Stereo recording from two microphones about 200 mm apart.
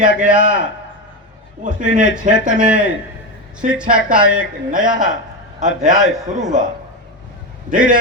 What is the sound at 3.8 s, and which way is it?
Speech, 45° right (ahead or behind).